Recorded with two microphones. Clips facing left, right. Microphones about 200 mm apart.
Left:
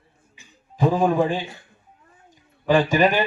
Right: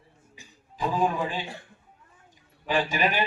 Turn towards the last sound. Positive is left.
turn(degrees=45)  # may be behind; listen again after turning